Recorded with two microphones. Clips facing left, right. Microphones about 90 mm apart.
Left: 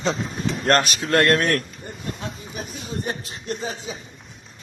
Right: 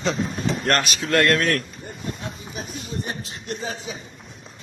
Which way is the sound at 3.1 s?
30° left (ahead or behind).